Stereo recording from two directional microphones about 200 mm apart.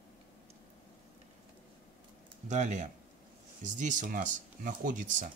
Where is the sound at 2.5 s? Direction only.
40° right (ahead or behind).